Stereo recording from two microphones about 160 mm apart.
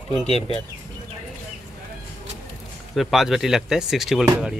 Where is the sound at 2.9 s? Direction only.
Centre (ahead or behind).